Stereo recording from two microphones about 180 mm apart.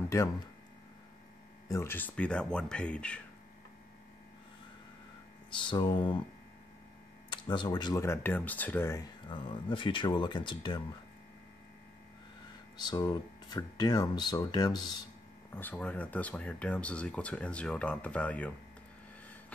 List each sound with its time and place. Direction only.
1.7 s speech: 15° left (ahead or behind)
5.6 s speech: 25° left (ahead or behind)
7.2 s speech: 25° left (ahead or behind)
9.3 s speech: 30° left (ahead or behind)
12.7 s speech: 25° left (ahead or behind)
15.5 s speech: 10° left (ahead or behind)